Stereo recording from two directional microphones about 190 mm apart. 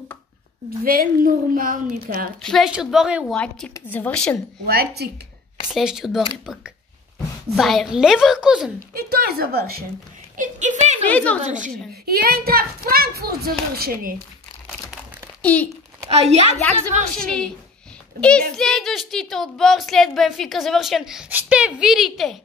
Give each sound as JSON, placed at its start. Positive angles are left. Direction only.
{"t": 0.7, "sound": "a child's voice", "side_deg": -50}
{"t": 2.4, "sound": "a child's voice", "side_deg": 0}
{"t": 3.3, "sound": "a woman's voice", "side_deg": 10}
{"t": 4.6, "sound": "a woman's voice", "side_deg": -55}
{"t": 5.7, "sound": "a child's voice", "side_deg": -5}
{"t": 8.9, "sound": "a child's voice", "side_deg": -55}
{"t": 10.3, "sound": "speech", "side_deg": -40}
{"t": 11.1, "sound": "a woman's voice", "side_deg": 5}
{"t": 11.4, "sound": "a woman's voice", "side_deg": -40}
{"t": 11.9, "sound": "a child's voice", "side_deg": -55}
{"t": 15.4, "sound": "speech", "side_deg": 5}
{"t": 16.1, "sound": "a woman's voice", "side_deg": -35}
{"t": 18.2, "sound": "a child's voice", "side_deg": 5}